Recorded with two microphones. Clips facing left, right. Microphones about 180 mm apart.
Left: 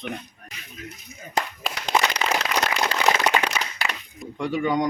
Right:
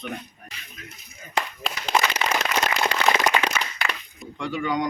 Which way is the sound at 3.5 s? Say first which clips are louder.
Even; 5° left (ahead or behind).